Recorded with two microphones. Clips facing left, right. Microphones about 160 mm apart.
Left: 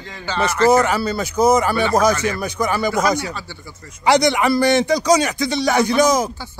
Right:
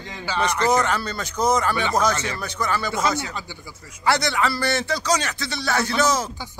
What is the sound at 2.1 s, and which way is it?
Speech, 30° right (ahead or behind).